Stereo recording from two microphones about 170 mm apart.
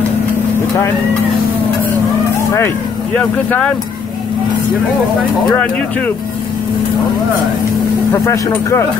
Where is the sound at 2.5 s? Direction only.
10° left (ahead or behind).